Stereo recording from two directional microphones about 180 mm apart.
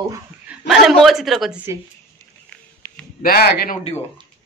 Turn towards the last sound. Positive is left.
turn(degrees=60)  # may be behind; listen again after turning